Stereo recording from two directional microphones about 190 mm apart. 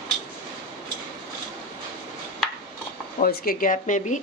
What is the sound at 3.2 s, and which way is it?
A woman's voice, 50° left (ahead or behind).